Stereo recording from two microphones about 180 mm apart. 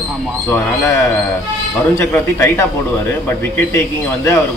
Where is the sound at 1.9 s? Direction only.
15° left (ahead or behind).